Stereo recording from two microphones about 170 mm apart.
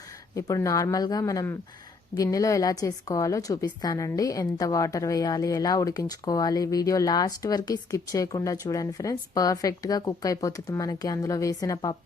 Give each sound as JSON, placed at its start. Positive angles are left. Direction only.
{"t": 0.3, "sound": "a woman's voice", "side_deg": 20}